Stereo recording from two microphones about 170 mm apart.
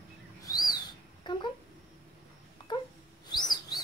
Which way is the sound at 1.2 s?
25° left (ahead or behind).